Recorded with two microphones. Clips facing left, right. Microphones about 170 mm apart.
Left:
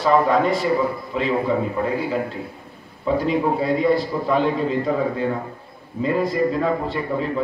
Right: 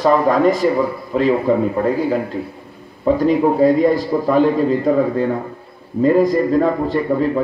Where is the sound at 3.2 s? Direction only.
45° right (ahead or behind).